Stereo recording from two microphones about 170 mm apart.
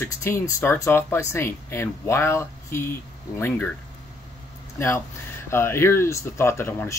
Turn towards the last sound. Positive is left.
turn(degrees=15)  # may be behind; listen again after turning